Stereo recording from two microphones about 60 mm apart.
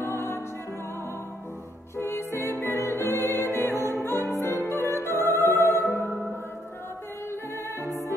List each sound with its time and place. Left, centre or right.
0.0 s music: left
2.0 s music: left
4.2 s music: left